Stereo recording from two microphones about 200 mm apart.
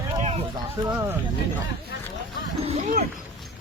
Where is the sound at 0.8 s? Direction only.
20° right (ahead or behind).